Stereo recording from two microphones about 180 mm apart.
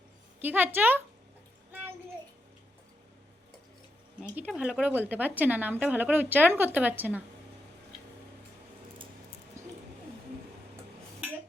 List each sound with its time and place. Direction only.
0.4 s a woman's voice: 10° right (ahead or behind)
4.4 s a woman's voice: 5° right (ahead or behind)
9.6 s bird: 15° right (ahead or behind)